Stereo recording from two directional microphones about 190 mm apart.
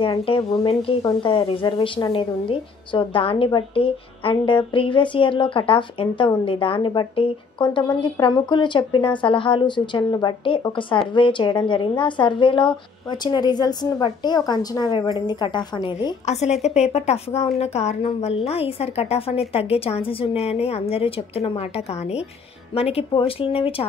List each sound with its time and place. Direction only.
0.0 s speech: 25° left (ahead or behind)
16.3 s a woman's voice: 35° left (ahead or behind)